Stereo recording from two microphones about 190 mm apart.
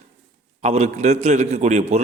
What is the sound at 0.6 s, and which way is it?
A man's voice, 35° right (ahead or behind).